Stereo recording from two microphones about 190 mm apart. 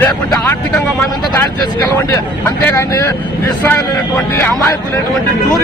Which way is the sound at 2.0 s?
15° left (ahead or behind).